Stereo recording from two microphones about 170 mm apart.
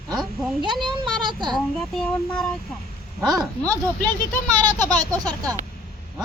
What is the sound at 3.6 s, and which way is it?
Speech, 10° left (ahead or behind).